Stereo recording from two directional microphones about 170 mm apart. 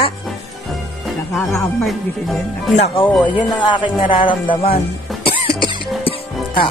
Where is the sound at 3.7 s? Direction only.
30° left (ahead or behind).